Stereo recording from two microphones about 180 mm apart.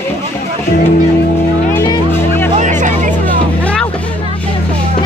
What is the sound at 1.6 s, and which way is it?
Music, 10° left (ahead or behind).